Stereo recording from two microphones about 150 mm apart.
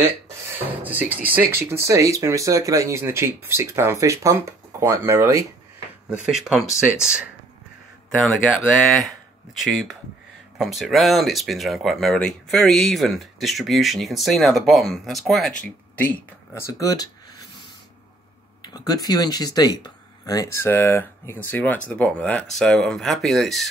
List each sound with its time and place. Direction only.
0.5 s speech: 10° right (ahead or behind)
6.0 s speech: 5° right (ahead or behind)
8.8 s speech: centre (ahead or behind)
16.0 s speech: 10° left (ahead or behind)
18.6 s speech: 25° left (ahead or behind); by 23.7 s centre (ahead or behind)